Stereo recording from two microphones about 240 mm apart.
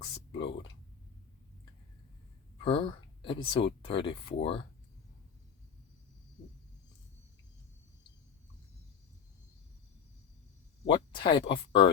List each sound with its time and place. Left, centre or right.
0.0 s a sound: centre
2.6 s speech: left
10.8 s speech: centre